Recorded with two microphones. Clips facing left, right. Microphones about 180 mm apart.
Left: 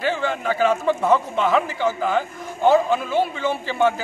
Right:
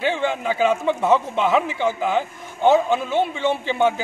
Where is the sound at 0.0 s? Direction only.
Centre (ahead or behind).